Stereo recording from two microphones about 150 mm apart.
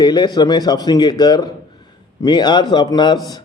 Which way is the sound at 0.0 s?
25° left (ahead or behind).